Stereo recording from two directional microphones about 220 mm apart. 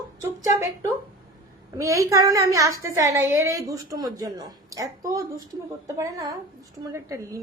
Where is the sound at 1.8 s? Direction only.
15° right (ahead or behind).